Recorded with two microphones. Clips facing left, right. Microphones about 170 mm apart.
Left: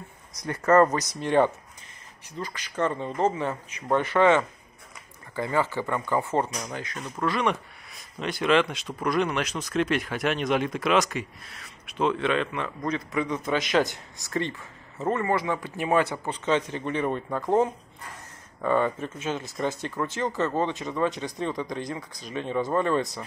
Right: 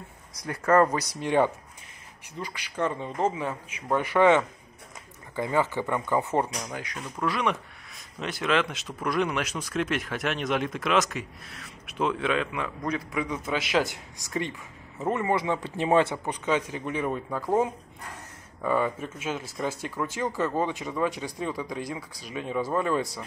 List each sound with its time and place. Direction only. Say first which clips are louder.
0.5 s speech: left 2 dB; 5° right (ahead or behind); by 16.3 s 25° right (ahead or behind)
16.4 s speech: left 2 dB; 10° right (ahead or behind)